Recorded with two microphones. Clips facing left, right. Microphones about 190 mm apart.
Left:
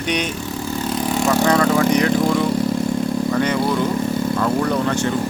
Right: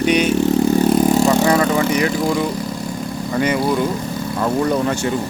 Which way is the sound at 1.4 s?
5° right (ahead or behind).